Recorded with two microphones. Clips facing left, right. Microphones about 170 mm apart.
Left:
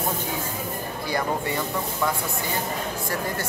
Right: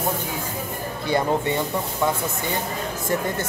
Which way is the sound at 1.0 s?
25° right (ahead or behind).